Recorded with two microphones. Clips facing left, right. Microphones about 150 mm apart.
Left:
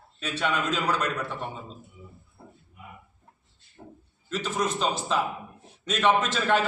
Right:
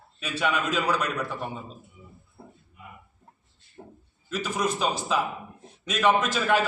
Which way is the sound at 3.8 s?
20° right (ahead or behind).